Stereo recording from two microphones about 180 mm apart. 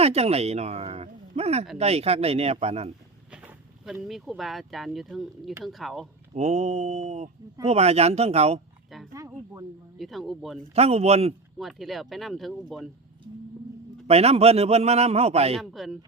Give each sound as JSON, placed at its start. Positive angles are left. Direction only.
{"t": 0.0, "sound": "speech", "side_deg": -35}
{"t": 3.3, "sound": "vehicle", "side_deg": -5}
{"t": 4.0, "sound": "speech", "side_deg": 0}
{"t": 6.3, "sound": "speech", "side_deg": -40}
{"t": 9.1, "sound": "speech", "side_deg": -15}
{"t": 10.0, "sound": "speech", "side_deg": 0}
{"t": 10.8, "sound": "speech", "side_deg": -35}
{"t": 11.5, "sound": "speech", "side_deg": 0}
{"t": 14.1, "sound": "speech", "side_deg": -35}
{"t": 15.5, "sound": "speech", "side_deg": 0}